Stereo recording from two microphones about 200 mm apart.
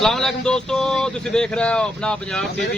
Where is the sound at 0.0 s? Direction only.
Centre (ahead or behind).